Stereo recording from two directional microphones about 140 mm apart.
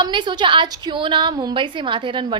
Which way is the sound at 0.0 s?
35° right (ahead or behind).